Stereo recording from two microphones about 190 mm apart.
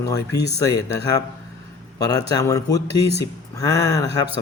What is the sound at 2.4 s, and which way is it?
Speech, 20° left (ahead or behind).